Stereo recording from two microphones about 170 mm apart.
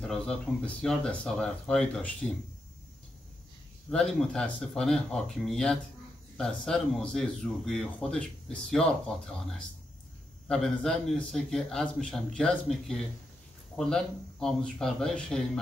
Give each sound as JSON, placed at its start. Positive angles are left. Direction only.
{"t": 0.0, "sound": "speech", "side_deg": 5}
{"t": 3.9, "sound": "speech", "side_deg": 5}